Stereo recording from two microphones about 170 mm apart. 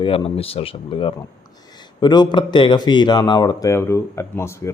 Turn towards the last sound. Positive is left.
turn(degrees=15)  # may be behind; listen again after turning